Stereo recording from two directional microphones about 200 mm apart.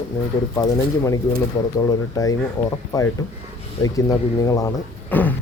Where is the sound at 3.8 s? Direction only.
15° left (ahead or behind).